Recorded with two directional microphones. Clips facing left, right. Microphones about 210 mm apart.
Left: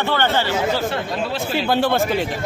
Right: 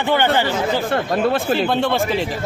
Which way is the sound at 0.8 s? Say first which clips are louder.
Right 5 dB; 55° right (ahead or behind).